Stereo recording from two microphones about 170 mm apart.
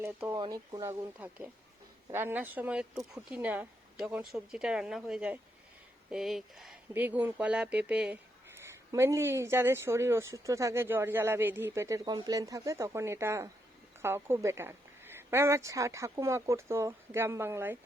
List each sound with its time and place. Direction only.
0.0 s speech: 15° right (ahead or behind)
0.3 s speech: 25° right (ahead or behind)